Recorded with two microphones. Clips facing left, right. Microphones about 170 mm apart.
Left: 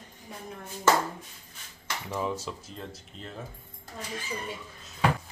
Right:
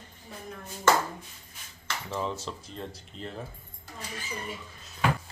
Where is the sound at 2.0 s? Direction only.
10° left (ahead or behind).